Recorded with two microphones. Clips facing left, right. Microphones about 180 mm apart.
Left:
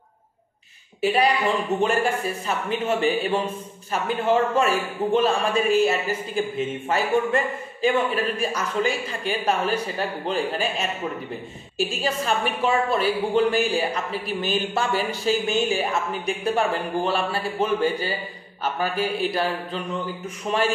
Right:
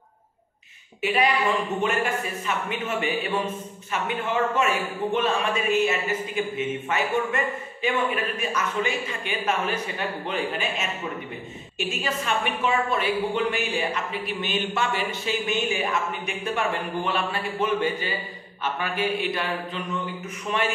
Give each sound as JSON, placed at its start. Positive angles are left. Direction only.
{"t": 1.0, "sound": "a man's voice", "side_deg": 35}